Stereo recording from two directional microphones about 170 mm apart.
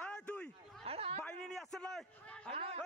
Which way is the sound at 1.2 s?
5° left (ahead or behind).